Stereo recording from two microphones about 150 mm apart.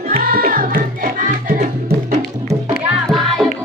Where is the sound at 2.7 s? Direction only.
Centre (ahead or behind).